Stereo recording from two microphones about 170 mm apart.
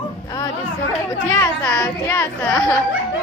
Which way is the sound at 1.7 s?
10° left (ahead or behind).